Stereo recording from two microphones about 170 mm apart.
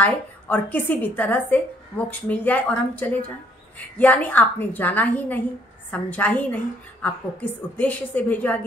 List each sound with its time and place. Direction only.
0.0 s a woman's voice: 10° left (ahead or behind)